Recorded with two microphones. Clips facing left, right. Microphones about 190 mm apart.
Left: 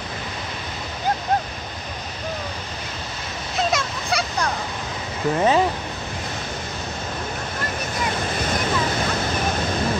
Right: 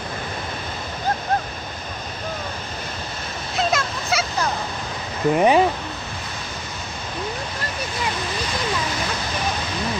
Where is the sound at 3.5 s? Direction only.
Centre (ahead or behind).